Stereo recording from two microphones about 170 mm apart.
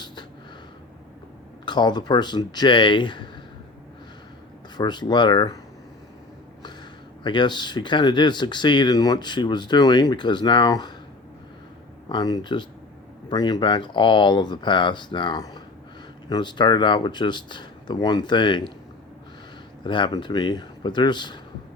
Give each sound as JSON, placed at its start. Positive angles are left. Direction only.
{"t": 1.6, "sound": "speech", "side_deg": 25}
{"t": 4.8, "sound": "speech", "side_deg": 25}
{"t": 7.3, "sound": "speech", "side_deg": 25}
{"t": 12.0, "sound": "speech", "side_deg": 25}
{"t": 19.8, "sound": "speech", "side_deg": 25}